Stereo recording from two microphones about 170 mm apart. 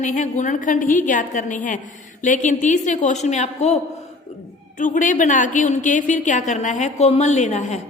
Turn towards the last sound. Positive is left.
turn(degrees=40)  # may be behind; listen again after turning